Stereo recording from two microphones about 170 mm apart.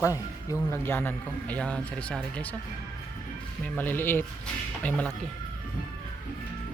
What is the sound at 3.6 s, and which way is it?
A man's voice, 10° left (ahead or behind).